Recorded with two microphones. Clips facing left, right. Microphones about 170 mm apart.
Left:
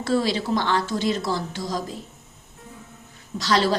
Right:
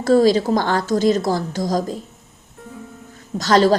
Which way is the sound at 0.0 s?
40° right (ahead or behind).